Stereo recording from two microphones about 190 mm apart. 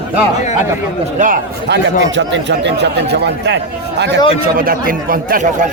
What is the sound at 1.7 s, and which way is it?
Speech, 70° right (ahead or behind).